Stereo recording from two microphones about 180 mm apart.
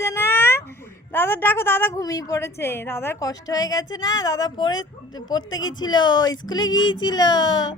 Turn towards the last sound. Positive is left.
turn(degrees=25)  # may be behind; listen again after turning